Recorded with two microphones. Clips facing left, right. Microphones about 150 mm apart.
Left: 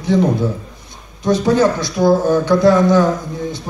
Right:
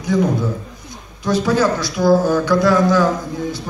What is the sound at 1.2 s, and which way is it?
A man's voice, 20° left (ahead or behind).